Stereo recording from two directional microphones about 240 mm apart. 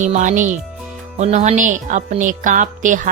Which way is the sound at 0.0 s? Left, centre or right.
Right.